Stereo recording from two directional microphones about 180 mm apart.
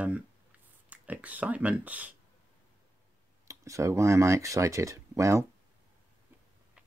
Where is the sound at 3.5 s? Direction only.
15° right (ahead or behind).